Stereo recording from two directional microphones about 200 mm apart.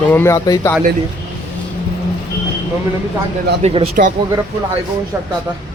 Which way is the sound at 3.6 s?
30° right (ahead or behind).